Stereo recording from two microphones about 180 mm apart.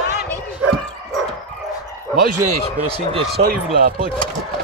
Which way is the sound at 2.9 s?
35° right (ahead or behind).